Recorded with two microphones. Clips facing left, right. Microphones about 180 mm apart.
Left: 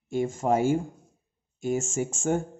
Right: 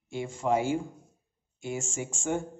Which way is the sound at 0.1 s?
45° left (ahead or behind).